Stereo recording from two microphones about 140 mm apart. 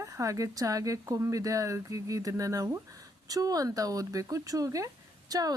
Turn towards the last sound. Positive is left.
turn(degrees=-25)  # may be behind; listen again after turning